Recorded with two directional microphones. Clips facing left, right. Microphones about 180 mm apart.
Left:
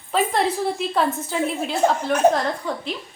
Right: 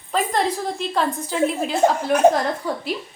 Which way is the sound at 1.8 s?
20° right (ahead or behind).